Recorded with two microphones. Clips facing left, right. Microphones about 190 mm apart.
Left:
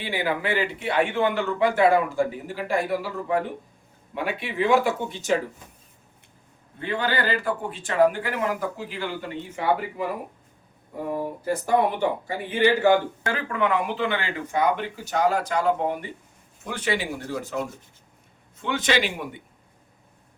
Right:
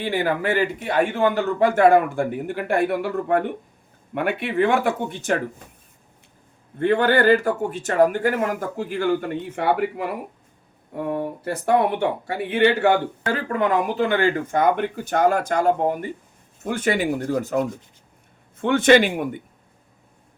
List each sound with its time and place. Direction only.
0.0 s a man's voice: 45° right (ahead or behind)
6.7 s a man's voice: 50° right (ahead or behind)
13.3 s a man's voice: 40° right (ahead or behind)